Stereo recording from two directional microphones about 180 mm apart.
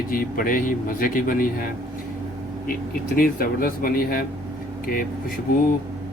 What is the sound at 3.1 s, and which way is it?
A man's voice, 55° left (ahead or behind).